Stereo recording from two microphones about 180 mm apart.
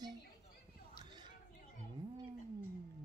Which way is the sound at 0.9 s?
25° right (ahead or behind).